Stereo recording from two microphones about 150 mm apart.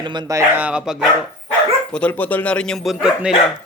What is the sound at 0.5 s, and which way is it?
Speech, 10° right (ahead or behind).